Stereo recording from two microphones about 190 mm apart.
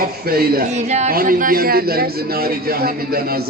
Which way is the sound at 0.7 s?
35° right (ahead or behind).